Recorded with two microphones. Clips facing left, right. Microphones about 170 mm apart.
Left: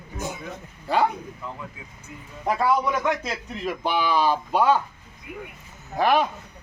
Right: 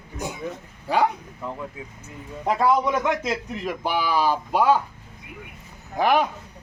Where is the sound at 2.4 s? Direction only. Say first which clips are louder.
Right 2 dB; 20° right (ahead or behind).